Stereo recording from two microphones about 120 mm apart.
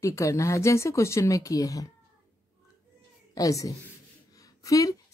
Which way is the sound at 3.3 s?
30° left (ahead or behind).